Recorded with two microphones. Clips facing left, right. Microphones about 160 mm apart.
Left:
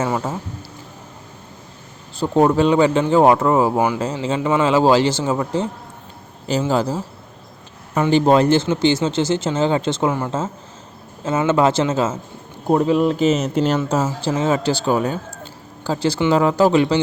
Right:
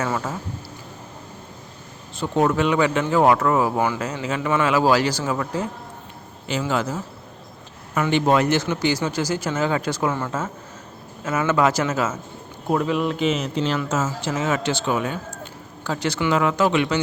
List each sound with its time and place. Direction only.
0.0 s speech: 25° left (ahead or behind)
2.1 s speech: 35° left (ahead or behind)